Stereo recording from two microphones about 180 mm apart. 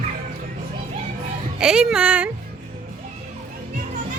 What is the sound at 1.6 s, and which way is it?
Speech, 5° right (ahead or behind).